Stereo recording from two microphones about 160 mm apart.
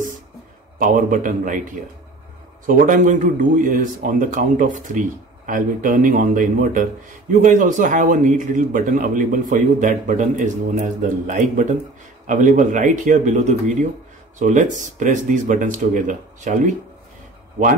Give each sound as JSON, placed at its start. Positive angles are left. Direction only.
{"t": 0.7, "sound": "a man's voice", "side_deg": -60}